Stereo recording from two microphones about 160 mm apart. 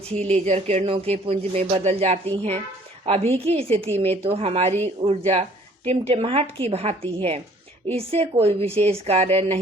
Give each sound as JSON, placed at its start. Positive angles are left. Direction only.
{"t": 0.1, "sound": "speech", "side_deg": -40}